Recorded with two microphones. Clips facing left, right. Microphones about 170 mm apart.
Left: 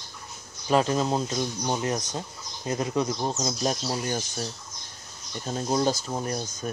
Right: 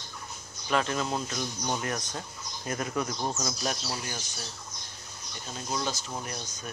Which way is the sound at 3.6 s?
35° left (ahead or behind).